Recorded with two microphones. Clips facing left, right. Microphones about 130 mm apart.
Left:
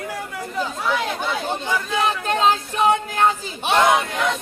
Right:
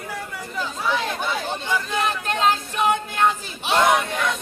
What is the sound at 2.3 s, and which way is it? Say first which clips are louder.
Speech: left 2 dB; 30° left (ahead or behind).